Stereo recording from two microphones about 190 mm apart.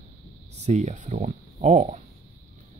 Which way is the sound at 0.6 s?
40° right (ahead or behind).